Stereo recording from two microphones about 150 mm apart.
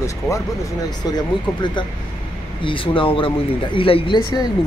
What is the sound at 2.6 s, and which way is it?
Speech, 35° left (ahead or behind).